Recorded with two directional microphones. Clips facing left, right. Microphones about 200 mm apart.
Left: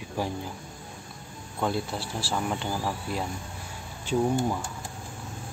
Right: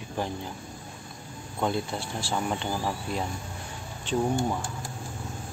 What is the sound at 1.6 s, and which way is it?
Speech, 5° left (ahead or behind).